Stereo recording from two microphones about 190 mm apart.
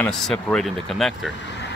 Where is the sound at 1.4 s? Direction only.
70° left (ahead or behind).